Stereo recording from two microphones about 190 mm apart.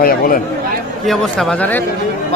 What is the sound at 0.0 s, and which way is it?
Speech, 50° left (ahead or behind).